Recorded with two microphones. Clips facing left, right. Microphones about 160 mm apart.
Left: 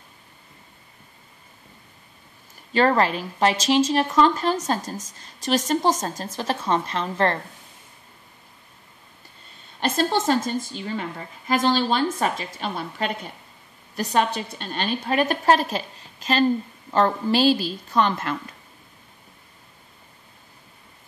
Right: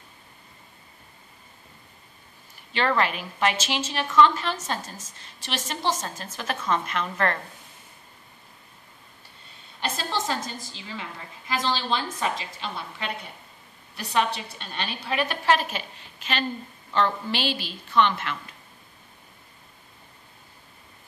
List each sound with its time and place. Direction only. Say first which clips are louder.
2.7 s a woman's voice: left 5 dB; 40° left (ahead or behind)
10.2 s a woman's voice: left 8 dB; 50° left (ahead or behind)